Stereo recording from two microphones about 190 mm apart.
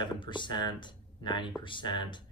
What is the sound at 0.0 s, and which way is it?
Speech, 25° left (ahead or behind).